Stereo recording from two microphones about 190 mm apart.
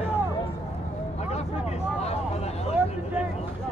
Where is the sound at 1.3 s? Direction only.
35° left (ahead or behind).